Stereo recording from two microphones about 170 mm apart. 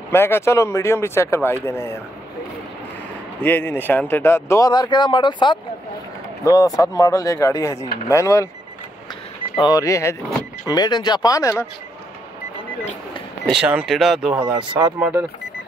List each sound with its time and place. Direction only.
0.1 s speech: 15° left (ahead or behind)
3.3 s speech: 10° left (ahead or behind)
9.6 s speech: 20° left (ahead or behind)
13.5 s speech: 5° right (ahead or behind)
14.8 s speech: 15° right (ahead or behind)